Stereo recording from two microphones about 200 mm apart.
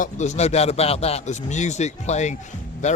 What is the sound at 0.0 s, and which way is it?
Speech, 35° left (ahead or behind).